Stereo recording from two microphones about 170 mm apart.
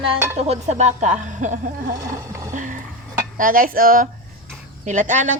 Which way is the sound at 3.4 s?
55° right (ahead or behind).